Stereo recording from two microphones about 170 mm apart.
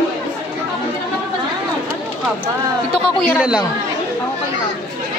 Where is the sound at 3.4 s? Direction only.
5° right (ahead or behind).